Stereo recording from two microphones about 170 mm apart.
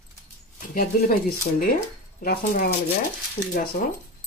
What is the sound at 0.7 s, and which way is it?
Speech, 55° left (ahead or behind).